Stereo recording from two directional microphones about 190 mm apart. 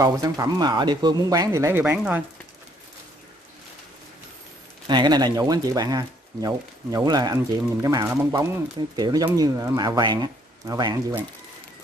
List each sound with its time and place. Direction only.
0.0 s speech: 20° right (ahead or behind)
4.8 s speech: 20° right (ahead or behind)